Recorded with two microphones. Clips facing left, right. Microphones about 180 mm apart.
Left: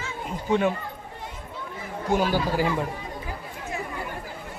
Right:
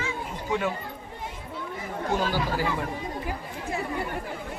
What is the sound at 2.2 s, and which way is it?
Speech, 15° left (ahead or behind).